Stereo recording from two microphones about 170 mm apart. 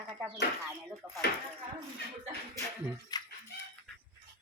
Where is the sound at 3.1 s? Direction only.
25° left (ahead or behind).